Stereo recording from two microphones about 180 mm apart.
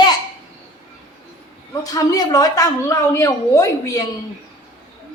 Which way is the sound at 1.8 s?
20° left (ahead or behind).